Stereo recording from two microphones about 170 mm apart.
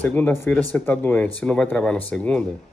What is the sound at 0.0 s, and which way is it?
Speech, 10° left (ahead or behind).